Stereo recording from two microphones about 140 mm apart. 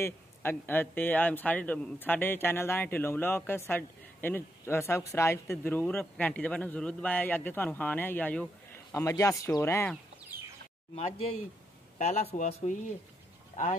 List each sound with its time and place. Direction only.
0.0 s speech: 15° left (ahead or behind)
8.9 s speech: 20° left (ahead or behind)
10.3 s bird: 15° right (ahead or behind)
12.0 s speech: 55° left (ahead or behind)